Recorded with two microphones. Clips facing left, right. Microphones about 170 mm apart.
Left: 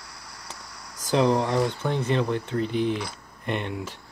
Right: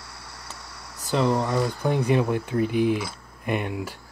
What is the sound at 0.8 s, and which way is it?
Speech, 5° right (ahead or behind).